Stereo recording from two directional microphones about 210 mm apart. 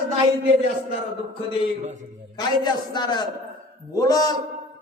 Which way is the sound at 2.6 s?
20° left (ahead or behind).